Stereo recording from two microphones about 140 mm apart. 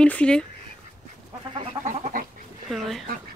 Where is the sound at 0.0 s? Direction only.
10° left (ahead or behind).